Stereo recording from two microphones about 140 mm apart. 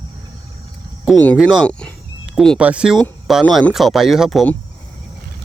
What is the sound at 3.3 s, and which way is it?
Mantra, centre (ahead or behind).